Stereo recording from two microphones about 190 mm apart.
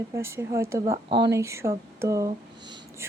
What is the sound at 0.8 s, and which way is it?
A woman's voice, 25° right (ahead or behind).